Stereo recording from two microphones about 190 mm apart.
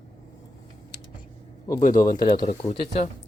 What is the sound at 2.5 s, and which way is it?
Speech, 30° left (ahead or behind).